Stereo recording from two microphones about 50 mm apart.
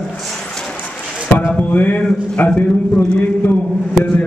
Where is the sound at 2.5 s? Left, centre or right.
Centre.